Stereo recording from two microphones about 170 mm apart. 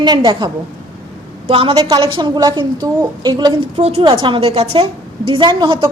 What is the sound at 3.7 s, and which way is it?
A woman's voice, 40° right (ahead or behind).